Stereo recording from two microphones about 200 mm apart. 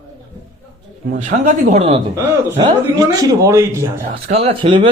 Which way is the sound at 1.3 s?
35° right (ahead or behind).